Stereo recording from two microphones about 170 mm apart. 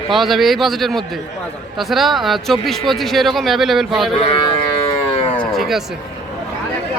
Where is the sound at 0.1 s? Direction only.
Centre (ahead or behind).